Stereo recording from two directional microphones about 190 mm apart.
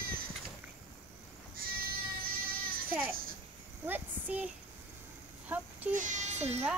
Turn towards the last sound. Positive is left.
turn(degrees=-35)  # may be behind; listen again after turning